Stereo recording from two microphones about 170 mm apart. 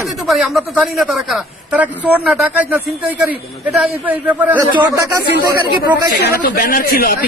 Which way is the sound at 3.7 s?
5° right (ahead or behind).